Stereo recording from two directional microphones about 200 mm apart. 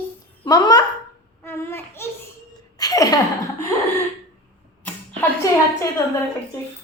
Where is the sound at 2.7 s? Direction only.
20° left (ahead or behind).